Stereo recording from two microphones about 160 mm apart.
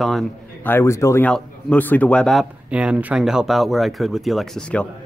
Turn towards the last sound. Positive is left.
turn(degrees=5)  # may be behind; listen again after turning